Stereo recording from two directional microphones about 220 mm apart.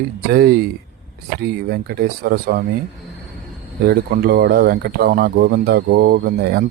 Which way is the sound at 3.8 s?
45° right (ahead or behind).